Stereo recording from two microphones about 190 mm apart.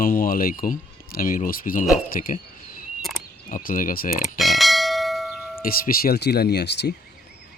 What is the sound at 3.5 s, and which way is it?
Speech, 45° left (ahead or behind).